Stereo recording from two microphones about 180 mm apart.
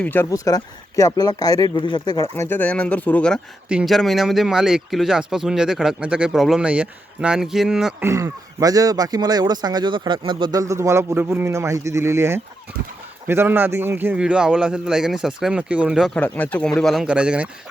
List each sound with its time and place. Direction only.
0.0 s speech: 10° left (ahead or behind)
2.3 s speech: 10° left (ahead or behind)
8.0 s speech: 15° right (ahead or behind)